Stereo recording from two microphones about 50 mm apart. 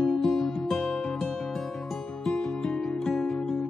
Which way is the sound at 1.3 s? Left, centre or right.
Centre.